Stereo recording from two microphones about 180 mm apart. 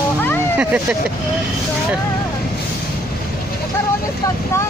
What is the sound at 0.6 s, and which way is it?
Speech, 5° right (ahead or behind).